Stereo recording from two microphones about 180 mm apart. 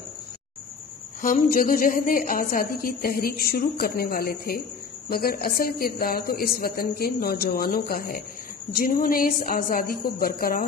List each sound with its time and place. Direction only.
1.2 s a woman's voice: 50° left (ahead or behind)